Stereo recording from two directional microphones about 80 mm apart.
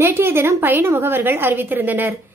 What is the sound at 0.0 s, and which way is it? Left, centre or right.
A woman's voice, right.